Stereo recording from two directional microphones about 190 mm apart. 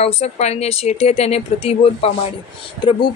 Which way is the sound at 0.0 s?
35° left (ahead or behind).